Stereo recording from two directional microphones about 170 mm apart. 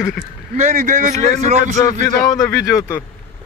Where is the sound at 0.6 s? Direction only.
45° right (ahead or behind).